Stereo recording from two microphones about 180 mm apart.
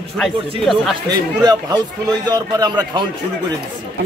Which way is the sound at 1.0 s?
20° right (ahead or behind).